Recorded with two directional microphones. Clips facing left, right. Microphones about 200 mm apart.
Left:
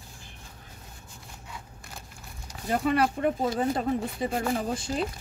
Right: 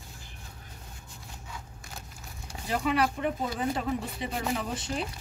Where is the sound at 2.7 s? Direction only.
50° left (ahead or behind).